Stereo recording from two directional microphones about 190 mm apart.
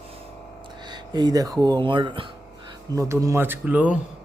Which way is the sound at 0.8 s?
20° right (ahead or behind).